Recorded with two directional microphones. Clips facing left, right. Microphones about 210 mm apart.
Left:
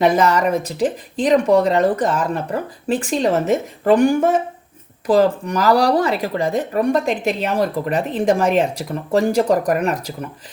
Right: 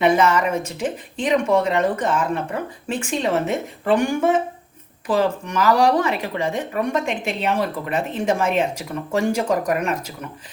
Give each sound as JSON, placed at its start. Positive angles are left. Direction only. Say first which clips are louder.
{"t": 0.0, "sound": "a woman's voice", "louder": "left 2 dB", "side_deg": 40}